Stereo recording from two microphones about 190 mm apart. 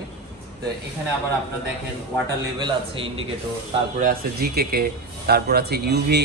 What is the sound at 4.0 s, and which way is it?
A man's voice, 50° right (ahead or behind).